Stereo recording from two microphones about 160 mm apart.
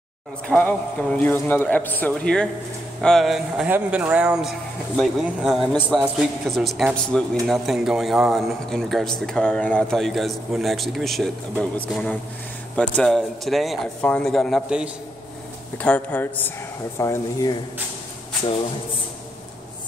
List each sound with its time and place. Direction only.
0.5 s a man's voice: 10° left (ahead or behind)
15.8 s a man's voice: 10° left (ahead or behind)
17.0 s speech: 20° left (ahead or behind)